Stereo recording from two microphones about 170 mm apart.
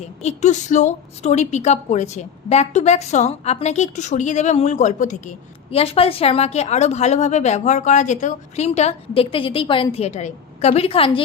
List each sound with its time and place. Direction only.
0.2 s a woman's voice: 40° left (ahead or behind)
5.7 s a woman's voice: 35° left (ahead or behind)